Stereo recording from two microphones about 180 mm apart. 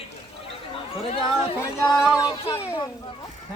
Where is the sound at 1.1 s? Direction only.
30° left (ahead or behind).